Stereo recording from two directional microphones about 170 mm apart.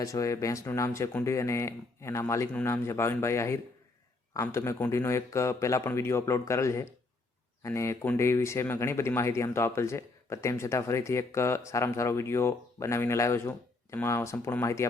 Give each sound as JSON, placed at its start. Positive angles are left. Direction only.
{"t": 0.0, "sound": "speech", "side_deg": 20}